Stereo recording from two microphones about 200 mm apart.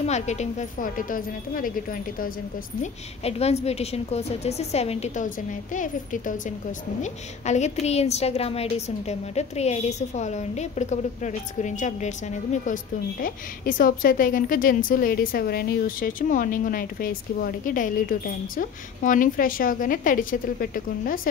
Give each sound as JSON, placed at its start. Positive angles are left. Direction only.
{"t": 0.0, "sound": "a woman's voice", "side_deg": 35}
{"t": 2.8, "sound": "a woman's voice", "side_deg": 30}
{"t": 13.2, "sound": "a woman's voice", "side_deg": 45}